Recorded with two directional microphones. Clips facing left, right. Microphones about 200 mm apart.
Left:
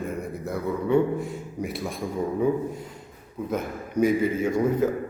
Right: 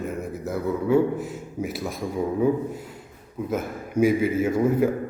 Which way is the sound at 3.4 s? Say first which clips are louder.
Right 1 dB; 5° right (ahead or behind).